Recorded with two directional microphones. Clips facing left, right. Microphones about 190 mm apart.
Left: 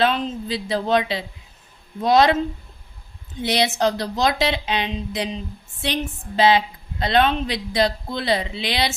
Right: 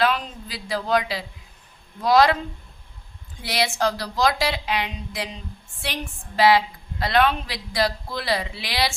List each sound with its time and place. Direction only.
0.0 s a woman's voice: 25° left (ahead or behind)